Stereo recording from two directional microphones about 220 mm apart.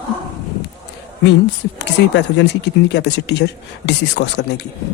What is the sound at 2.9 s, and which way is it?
Speech, 50° left (ahead or behind).